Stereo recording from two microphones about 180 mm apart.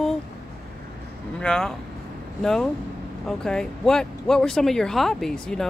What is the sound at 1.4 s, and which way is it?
Speech, 5° left (ahead or behind).